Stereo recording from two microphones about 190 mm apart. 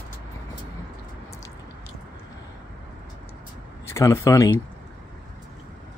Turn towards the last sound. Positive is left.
turn(degrees=15)  # may be behind; listen again after turning